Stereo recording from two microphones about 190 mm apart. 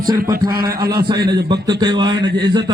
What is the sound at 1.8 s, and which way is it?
Speech, 25° right (ahead or behind).